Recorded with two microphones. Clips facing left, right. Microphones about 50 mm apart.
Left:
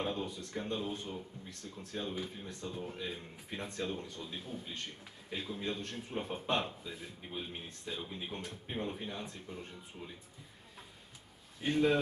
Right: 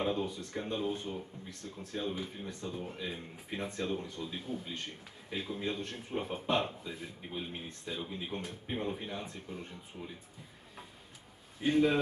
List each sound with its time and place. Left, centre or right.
0.0 s speech: centre
11.6 s speech: centre